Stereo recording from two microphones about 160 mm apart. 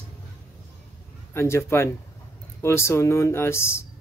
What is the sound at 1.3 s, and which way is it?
Speech, 15° left (ahead or behind).